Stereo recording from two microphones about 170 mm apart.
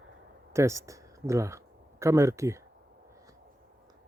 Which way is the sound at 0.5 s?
15° right (ahead or behind).